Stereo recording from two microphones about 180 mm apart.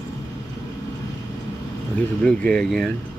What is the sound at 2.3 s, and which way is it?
Speech, 5° left (ahead or behind).